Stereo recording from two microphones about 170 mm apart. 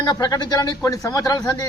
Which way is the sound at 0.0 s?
25° left (ahead or behind).